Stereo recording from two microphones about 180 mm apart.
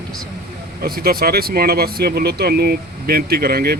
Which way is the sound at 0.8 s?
55° right (ahead or behind).